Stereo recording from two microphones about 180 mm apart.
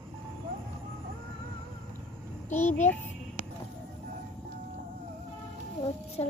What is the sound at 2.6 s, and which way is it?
Child singing, 40° left (ahead or behind).